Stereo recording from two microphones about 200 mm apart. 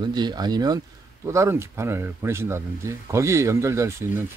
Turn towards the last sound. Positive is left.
turn(degrees=-15)  # may be behind; listen again after turning